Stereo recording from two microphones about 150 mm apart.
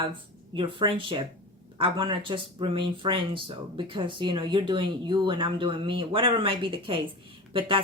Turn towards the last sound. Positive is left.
turn(degrees=-35)  # may be behind; listen again after turning